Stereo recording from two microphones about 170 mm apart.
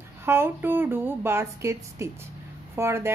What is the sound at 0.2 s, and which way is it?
Speech, 15° right (ahead or behind).